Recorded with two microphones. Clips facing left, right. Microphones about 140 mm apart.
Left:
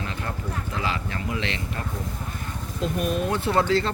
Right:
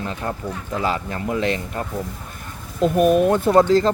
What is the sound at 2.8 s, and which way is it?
Speech, 55° right (ahead or behind).